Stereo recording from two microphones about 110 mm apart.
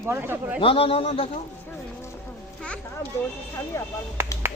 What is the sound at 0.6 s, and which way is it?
Speech, 55° left (ahead or behind).